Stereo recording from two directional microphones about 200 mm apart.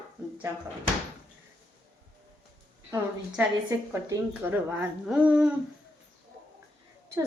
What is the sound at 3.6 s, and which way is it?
A woman's voice, 15° right (ahead or behind).